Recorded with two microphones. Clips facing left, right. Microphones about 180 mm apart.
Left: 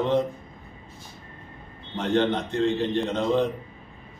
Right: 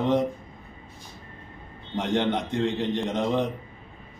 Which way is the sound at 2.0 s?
15° right (ahead or behind).